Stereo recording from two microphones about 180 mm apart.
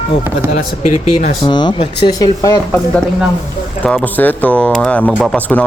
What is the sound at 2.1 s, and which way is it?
Speech, 20° left (ahead or behind).